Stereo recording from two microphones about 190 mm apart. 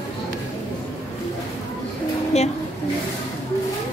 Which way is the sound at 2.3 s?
35° left (ahead or behind).